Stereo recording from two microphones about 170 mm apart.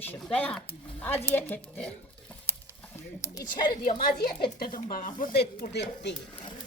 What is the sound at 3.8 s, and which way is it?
Speech, 55° left (ahead or behind).